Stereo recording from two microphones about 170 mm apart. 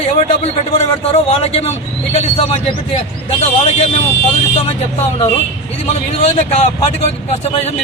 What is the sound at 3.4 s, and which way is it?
Speech, 40° left (ahead or behind).